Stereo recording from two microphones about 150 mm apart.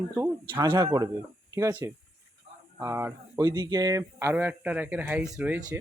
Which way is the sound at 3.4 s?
30° right (ahead or behind).